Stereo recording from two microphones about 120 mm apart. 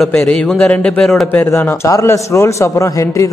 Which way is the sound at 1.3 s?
15° left (ahead or behind).